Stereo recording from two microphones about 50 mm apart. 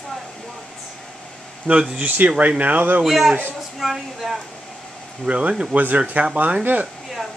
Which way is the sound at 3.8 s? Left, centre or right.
Centre.